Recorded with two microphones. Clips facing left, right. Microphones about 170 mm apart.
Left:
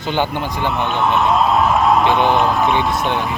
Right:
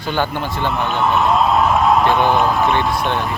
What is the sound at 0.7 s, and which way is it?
Speech, centre (ahead or behind).